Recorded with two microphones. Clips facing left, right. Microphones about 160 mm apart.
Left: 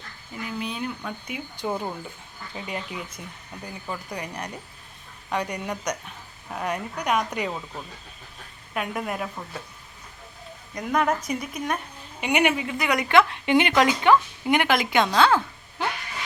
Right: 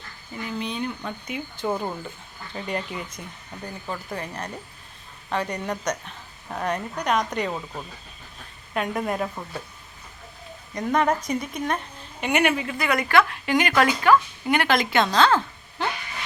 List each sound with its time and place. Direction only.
0.3 s speech: 5° left (ahead or behind)
4.1 s speech: 15° left (ahead or behind)
8.7 s speech: 5° left (ahead or behind)
10.8 s speech: 5° left (ahead or behind)